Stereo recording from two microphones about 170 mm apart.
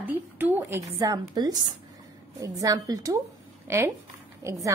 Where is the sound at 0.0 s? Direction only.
10° right (ahead or behind).